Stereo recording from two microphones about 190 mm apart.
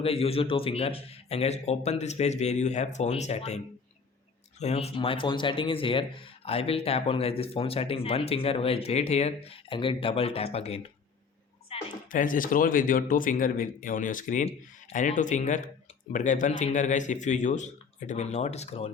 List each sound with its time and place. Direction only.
0.0 s speech: 30° left (ahead or behind)
4.6 s speech: 35° left (ahead or behind)
11.7 s a sound: 30° left (ahead or behind)
12.0 s a man's voice: 45° left (ahead or behind)